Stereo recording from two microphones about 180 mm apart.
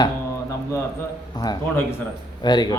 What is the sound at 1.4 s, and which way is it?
Speech, 20° left (ahead or behind).